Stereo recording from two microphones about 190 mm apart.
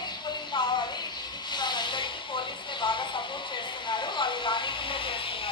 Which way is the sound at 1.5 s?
25° left (ahead or behind).